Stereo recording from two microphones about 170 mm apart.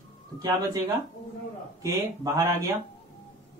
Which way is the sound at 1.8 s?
20° right (ahead or behind).